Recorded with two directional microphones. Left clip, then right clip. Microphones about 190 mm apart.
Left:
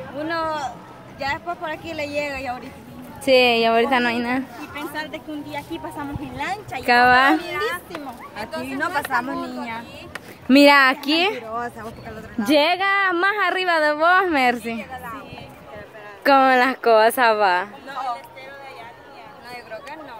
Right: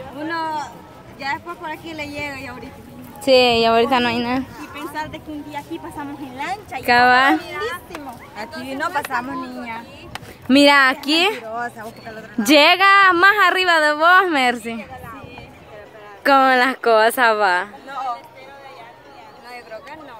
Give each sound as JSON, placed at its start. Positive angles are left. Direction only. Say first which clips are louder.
{"t": 0.2, "sound": "a woman's voice", "louder": "even", "side_deg": 5}
{"t": 3.3, "sound": "a woman's voice", "louder": "right 2 dB", "side_deg": -20}
{"t": 4.7, "sound": "a woman's voice", "louder": "right 1 dB", "side_deg": 0}
{"t": 7.4, "sound": "a woman's voice", "louder": "left 1 dB", "side_deg": 40}
{"t": 8.6, "sound": "a woman's voice", "louder": "right 2 dB", "side_deg": -20}
{"t": 9.1, "sound": "a woman's voice", "louder": "left 1 dB", "side_deg": -10}
{"t": 12.4, "sound": "a woman's voice", "louder": "right 6 dB", "side_deg": -20}
{"t": 16.3, "sound": "a woman's voice", "louder": "right 1 dB", "side_deg": -5}
{"t": 19.5, "sound": "a sound", "louder": "even", "side_deg": 0}